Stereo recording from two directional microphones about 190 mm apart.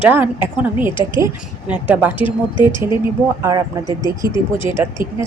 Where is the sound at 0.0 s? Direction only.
10° right (ahead or behind).